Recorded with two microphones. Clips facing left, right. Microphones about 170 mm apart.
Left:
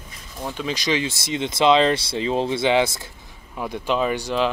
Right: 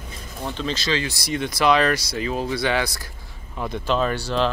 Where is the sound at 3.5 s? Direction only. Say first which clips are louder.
Even; 10° left (ahead or behind).